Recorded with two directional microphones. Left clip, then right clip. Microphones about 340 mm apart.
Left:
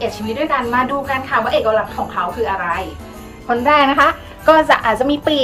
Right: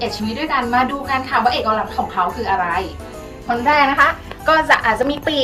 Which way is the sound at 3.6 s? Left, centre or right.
Left.